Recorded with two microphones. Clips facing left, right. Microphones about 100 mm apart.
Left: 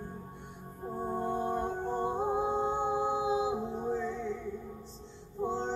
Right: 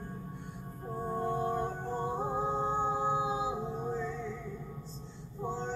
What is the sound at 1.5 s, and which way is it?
Music, 20° left (ahead or behind).